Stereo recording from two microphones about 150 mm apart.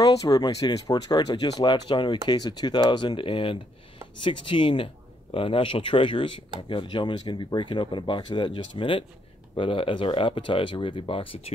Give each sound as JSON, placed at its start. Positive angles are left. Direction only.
{"t": 0.0, "sound": "speech", "side_deg": 25}